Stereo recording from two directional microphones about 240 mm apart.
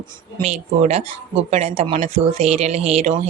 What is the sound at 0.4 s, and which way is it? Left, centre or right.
Speech, right.